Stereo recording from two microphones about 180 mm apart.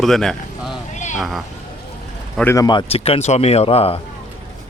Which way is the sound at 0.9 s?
40° left (ahead or behind).